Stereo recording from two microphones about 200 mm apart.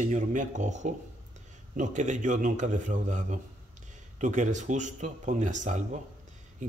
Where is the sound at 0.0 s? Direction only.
40° right (ahead or behind).